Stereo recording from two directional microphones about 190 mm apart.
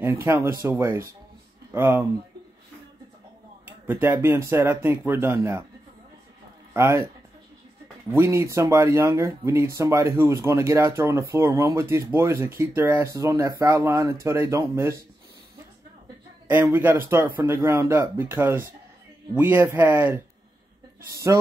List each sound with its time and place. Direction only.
0.0 s speech: 15° right (ahead or behind)
3.6 s speech: 10° right (ahead or behind)
6.7 s speech: 15° right (ahead or behind)
8.1 s speech: 15° right (ahead or behind)
16.4 s speech: 10° right (ahead or behind)